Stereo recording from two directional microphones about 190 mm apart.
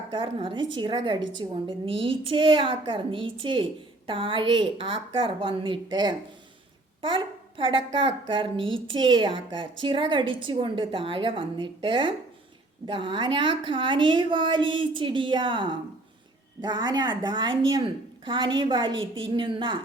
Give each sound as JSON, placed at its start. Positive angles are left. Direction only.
{"t": 0.1, "sound": "a woman's voice", "side_deg": -25}